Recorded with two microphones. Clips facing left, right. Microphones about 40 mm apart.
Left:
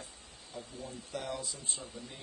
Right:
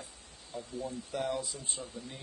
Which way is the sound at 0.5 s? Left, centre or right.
Centre.